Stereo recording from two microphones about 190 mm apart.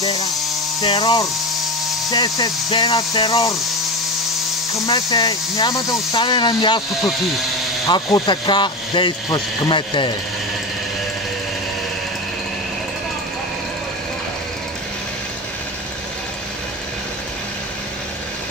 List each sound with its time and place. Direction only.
0.0 s a sound: 20° left (ahead or behind)
0.8 s speech: 25° left (ahead or behind)
4.7 s speech: 20° left (ahead or behind)
7.8 s speech: 20° left (ahead or behind)